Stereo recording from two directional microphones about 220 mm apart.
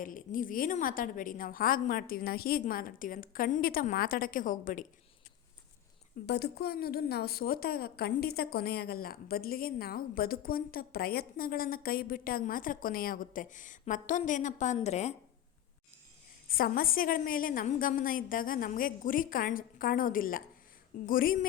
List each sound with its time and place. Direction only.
0.0 s a woman's voice: 40° left (ahead or behind)
6.2 s a woman's voice: 50° left (ahead or behind); by 15.1 s 30° left (ahead or behind)
16.5 s a woman's voice: 40° left (ahead or behind)